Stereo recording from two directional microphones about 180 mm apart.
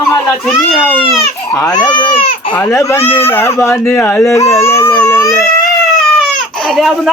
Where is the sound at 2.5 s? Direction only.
15° left (ahead or behind).